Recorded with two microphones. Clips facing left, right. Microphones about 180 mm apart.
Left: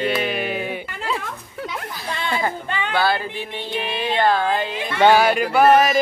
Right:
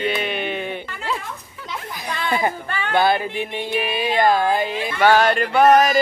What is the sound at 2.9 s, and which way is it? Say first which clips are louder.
Music: right 4 dB; 20° right (ahead or behind).